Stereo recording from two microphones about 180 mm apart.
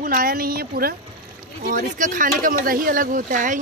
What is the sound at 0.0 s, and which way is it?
Speech, 50° right (ahead or behind).